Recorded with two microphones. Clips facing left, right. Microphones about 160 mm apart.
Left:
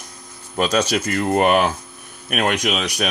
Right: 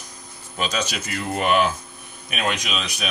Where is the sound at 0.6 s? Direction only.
55° left (ahead or behind).